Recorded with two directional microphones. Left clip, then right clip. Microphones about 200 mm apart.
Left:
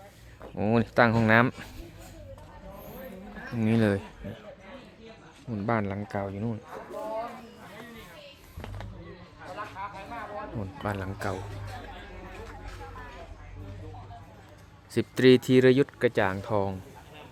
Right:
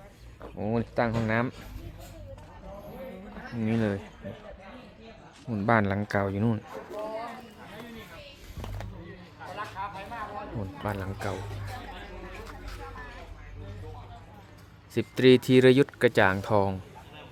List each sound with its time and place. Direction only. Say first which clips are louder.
0.5 s speech: left 5 dB; 30° left (ahead or behind)
3.6 s speech: left 3 dB; 20° left (ahead or behind)
5.5 s speech: right 4 dB; 10° right (ahead or behind)
9.6 s a sound: right 2 dB; 35° right (ahead or behind)
10.6 s a man's voice: even; 5° left (ahead or behind)
14.9 s speech: even; 5° left (ahead or behind); by 16.7 s 10° right (ahead or behind)